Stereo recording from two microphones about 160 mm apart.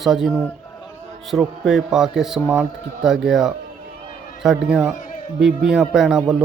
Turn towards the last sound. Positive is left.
turn(degrees=0)  # may be behind; listen again after turning